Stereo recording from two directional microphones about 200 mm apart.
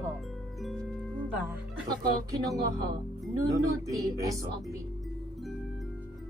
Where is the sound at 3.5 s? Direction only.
15° right (ahead or behind).